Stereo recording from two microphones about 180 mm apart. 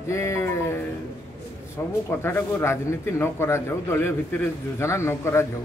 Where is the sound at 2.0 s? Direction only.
15° left (ahead or behind).